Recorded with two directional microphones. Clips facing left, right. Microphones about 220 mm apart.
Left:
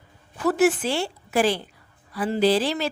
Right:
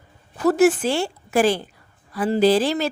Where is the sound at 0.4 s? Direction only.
40° right (ahead or behind).